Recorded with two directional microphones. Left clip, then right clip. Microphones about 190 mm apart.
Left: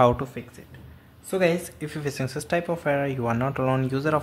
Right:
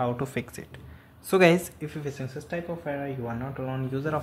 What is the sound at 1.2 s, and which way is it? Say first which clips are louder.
Speech: right 3 dB; 30° right (ahead or behind).